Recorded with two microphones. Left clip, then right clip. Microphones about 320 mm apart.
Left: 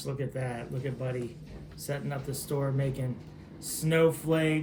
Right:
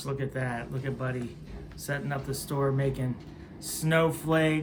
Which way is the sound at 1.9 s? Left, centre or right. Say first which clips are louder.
Right 3 dB; centre.